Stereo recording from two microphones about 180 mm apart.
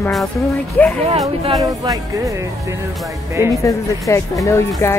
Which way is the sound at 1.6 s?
20° right (ahead or behind).